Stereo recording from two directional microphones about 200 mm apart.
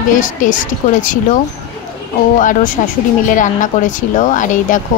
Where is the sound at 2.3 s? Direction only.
40° left (ahead or behind).